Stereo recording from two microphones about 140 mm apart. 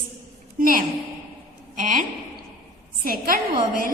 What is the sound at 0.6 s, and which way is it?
Speech, 85° right.